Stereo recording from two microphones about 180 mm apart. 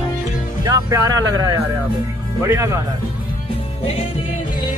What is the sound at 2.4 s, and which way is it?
Speech, 15° right (ahead or behind).